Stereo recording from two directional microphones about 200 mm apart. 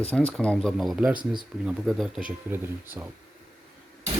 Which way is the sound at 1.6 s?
Centre (ahead or behind).